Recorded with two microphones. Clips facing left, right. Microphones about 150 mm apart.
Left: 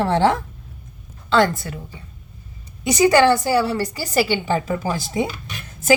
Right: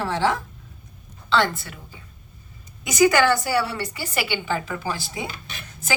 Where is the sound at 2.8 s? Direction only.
30° left (ahead or behind).